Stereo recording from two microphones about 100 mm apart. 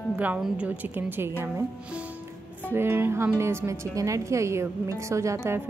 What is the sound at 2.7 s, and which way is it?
Speech, 25° right (ahead or behind).